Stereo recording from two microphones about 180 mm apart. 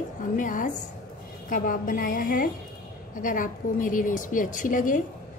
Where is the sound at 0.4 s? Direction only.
50° left (ahead or behind).